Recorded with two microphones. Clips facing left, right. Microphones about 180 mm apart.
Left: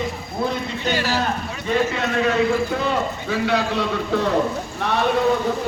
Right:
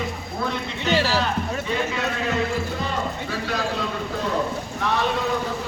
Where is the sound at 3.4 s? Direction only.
70° left (ahead or behind).